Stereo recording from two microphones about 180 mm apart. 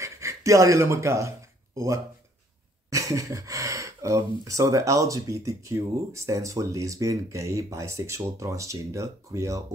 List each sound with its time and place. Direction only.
0.0 s speech: 15° right (ahead or behind)
2.9 s a sound: 20° right (ahead or behind)
4.5 s speech: 15° right (ahead or behind)